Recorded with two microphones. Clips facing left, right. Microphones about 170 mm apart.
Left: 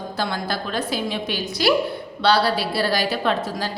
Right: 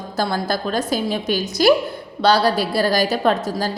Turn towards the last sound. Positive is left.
turn(degrees=-40)  # may be behind; listen again after turning